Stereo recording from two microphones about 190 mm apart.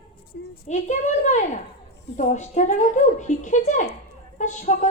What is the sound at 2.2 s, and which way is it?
A man's voice, 40° left (ahead or behind).